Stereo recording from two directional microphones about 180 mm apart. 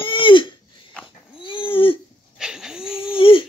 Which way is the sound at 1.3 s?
30° left (ahead or behind).